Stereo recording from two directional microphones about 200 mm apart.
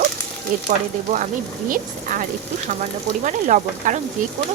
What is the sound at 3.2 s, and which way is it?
Speech, 40° right (ahead or behind).